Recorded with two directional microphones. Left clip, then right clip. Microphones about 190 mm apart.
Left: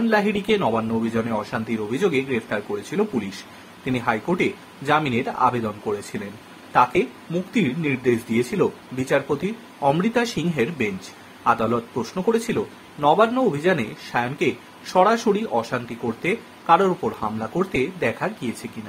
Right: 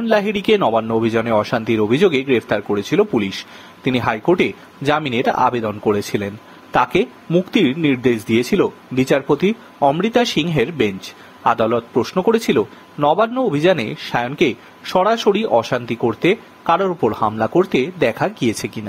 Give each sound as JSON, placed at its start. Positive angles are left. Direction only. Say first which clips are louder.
{"t": 0.1, "sound": "speech", "louder": "right 7 dB", "side_deg": -45}